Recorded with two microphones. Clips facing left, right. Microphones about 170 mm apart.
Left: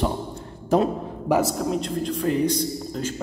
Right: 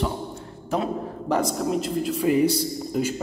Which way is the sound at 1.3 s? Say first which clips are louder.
Left 2 dB; 5° left (ahead or behind).